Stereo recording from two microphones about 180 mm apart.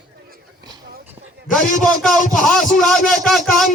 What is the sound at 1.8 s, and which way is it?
Speech, centre (ahead or behind).